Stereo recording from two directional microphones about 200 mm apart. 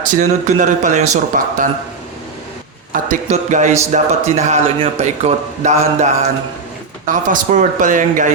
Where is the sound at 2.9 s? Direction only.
40° right (ahead or behind).